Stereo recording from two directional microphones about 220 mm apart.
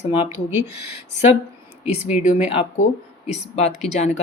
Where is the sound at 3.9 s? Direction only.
30° left (ahead or behind).